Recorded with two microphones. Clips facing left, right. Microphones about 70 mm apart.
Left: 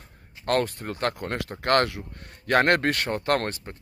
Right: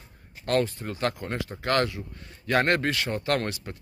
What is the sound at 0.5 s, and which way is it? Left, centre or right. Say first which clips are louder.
Speech: left 1 dB; left.